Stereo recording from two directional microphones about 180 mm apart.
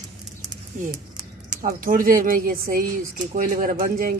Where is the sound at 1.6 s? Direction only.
50° right (ahead or behind).